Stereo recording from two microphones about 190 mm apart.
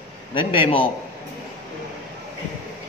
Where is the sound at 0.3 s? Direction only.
25° left (ahead or behind).